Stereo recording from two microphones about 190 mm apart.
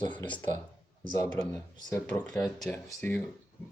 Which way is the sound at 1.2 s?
5° left (ahead or behind).